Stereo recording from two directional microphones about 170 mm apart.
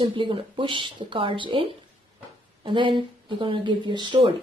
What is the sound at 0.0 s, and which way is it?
Speech, 30° right (ahead or behind).